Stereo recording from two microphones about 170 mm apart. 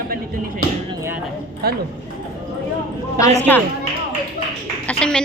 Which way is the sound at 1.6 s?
70° right (ahead or behind).